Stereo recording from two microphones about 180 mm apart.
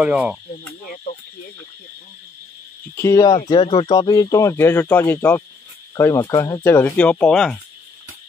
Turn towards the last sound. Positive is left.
turn(degrees=5)  # may be behind; listen again after turning